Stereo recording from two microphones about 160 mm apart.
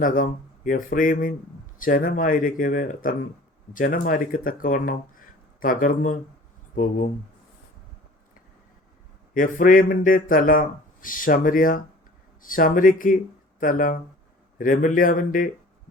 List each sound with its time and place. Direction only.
0.0 s speech: 55° left (ahead or behind)
9.3 s speech: 60° left (ahead or behind)